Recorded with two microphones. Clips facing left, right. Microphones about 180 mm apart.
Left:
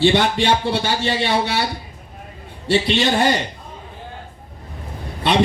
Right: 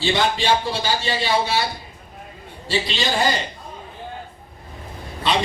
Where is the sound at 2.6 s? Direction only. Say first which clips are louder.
Left 6 dB; 60° left (ahead or behind).